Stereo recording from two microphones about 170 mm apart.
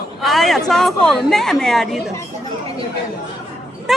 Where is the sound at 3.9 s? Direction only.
Centre (ahead or behind).